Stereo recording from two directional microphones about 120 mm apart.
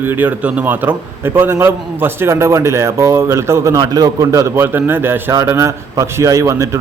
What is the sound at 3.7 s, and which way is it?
A man's voice, 35° right (ahead or behind).